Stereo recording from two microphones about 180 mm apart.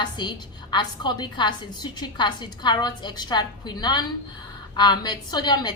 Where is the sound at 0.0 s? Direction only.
25° left (ahead or behind).